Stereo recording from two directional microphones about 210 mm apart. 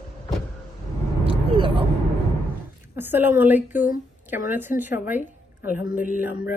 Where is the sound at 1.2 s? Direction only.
25° right (ahead or behind).